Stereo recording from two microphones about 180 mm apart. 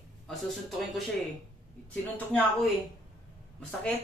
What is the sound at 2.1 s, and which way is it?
Speech, 10° left (ahead or behind).